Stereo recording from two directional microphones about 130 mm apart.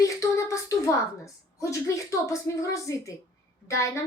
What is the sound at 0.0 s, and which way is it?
A woman's voice, 25° left (ahead or behind).